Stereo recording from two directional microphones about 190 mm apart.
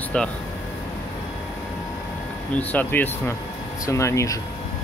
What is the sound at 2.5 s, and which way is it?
Speech, 10° left (ahead or behind).